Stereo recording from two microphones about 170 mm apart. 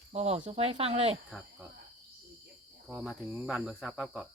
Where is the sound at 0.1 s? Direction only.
40° right (ahead or behind).